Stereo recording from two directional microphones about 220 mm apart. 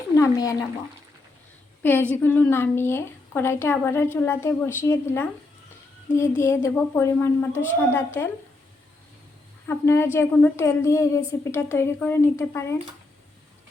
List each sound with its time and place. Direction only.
0.2 s speech: 15° left (ahead or behind)
1.8 s a woman's voice: 10° left (ahead or behind)
9.6 s a woman's voice: 10° left (ahead or behind)